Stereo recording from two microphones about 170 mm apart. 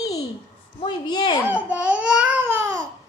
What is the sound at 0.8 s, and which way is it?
Speech, 25° left (ahead or behind).